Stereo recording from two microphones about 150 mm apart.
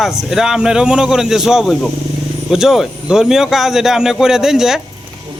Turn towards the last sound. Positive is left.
turn(degrees=-5)  # may be behind; listen again after turning